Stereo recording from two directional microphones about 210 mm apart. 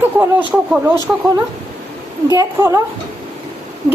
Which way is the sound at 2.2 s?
15° right (ahead or behind).